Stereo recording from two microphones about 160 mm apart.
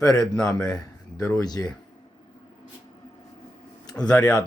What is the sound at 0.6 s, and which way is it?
Speech, 25° left (ahead or behind).